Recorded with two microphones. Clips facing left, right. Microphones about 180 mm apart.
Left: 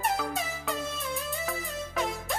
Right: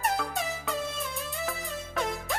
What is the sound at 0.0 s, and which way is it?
Music, centre (ahead or behind).